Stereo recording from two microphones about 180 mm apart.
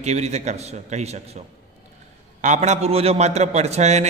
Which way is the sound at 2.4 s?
40° right (ahead or behind).